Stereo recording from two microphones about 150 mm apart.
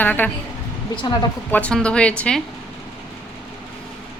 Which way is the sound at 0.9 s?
30° left (ahead or behind).